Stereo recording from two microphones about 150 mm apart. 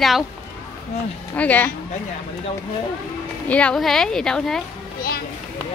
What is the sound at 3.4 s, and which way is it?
Speech, 10° left (ahead or behind).